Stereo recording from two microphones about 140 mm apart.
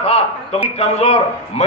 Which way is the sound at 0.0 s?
50° left (ahead or behind).